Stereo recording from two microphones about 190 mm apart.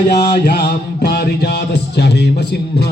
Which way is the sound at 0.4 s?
55° left (ahead or behind).